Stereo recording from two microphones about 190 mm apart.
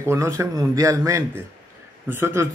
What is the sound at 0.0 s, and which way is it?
Speech, 15° right (ahead or behind).